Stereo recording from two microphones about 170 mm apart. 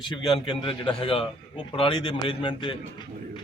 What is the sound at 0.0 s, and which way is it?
A man's voice, 30° left (ahead or behind).